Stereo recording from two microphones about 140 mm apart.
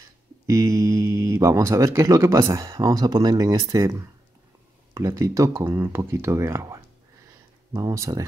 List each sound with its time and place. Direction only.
0.5 s speech: 20° right (ahead or behind)